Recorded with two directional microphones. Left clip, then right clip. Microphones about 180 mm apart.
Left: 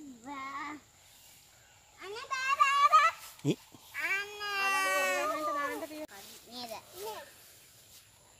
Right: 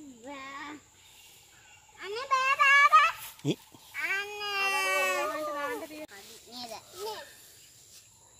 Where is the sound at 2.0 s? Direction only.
15° left (ahead or behind).